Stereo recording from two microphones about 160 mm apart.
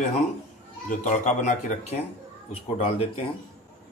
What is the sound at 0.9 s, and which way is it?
Speech, 50° left (ahead or behind).